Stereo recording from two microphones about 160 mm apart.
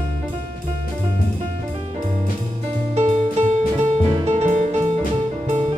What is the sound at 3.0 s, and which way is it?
Music, 45° right (ahead or behind).